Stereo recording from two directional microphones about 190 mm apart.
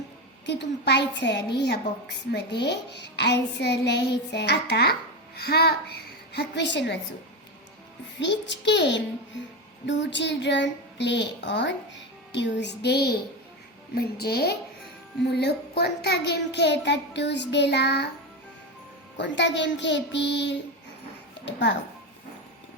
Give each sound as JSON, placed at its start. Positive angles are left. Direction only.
{"t": 0.4, "sound": "a woman's voice", "side_deg": 60}
{"t": 8.2, "sound": "a child's voice", "side_deg": 65}
{"t": 19.1, "sound": "a child's voice", "side_deg": 65}